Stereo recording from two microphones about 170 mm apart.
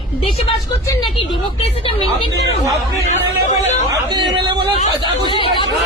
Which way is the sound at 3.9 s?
20° right (ahead or behind).